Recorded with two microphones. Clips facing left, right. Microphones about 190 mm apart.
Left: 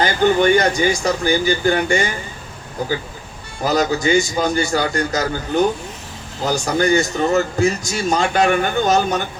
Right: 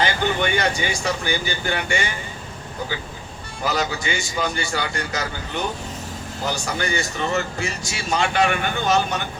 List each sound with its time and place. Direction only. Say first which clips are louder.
0.0 s speech: left 7 dB; 40° left (ahead or behind)
3.6 s speech: left 7 dB; 40° left (ahead or behind)